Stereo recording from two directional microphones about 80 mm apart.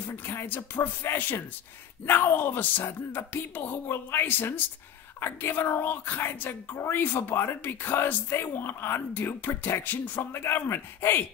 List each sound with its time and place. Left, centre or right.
0.1 s speech: left